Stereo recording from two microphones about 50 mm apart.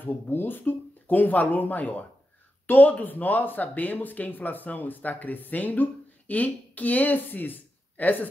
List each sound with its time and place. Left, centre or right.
0.0 s speech: left